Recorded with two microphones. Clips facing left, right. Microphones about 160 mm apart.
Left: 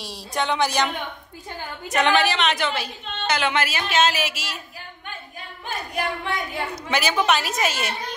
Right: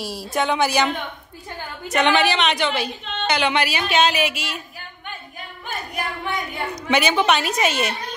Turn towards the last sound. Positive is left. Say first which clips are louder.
# right 4 dB
turn(degrees=5)  # may be behind; listen again after turning